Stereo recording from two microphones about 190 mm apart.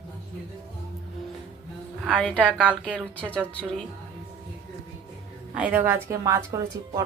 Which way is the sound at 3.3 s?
5° left (ahead or behind).